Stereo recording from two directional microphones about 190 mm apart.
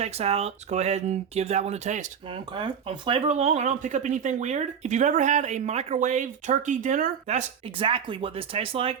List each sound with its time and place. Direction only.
0.0 s speech: 35° right (ahead or behind)